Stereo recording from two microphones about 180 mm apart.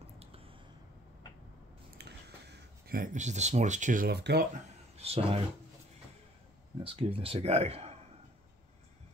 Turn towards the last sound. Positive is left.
turn(degrees=-35)  # may be behind; listen again after turning